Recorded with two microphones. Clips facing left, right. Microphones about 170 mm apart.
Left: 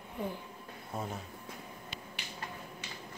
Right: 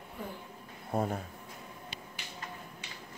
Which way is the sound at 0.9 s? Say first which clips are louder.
Right 8 dB; 55° right (ahead or behind).